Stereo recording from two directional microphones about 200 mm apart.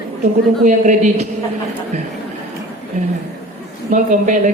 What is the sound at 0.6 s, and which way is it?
Speech, 40° right (ahead or behind).